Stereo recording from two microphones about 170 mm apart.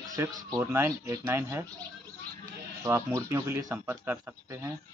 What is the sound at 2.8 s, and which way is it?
Speech, 15° right (ahead or behind).